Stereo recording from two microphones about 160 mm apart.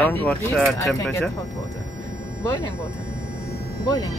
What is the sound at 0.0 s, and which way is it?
Speech, 5° left (ahead or behind).